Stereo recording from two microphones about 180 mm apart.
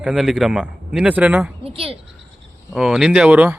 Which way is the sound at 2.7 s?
Centre (ahead or behind).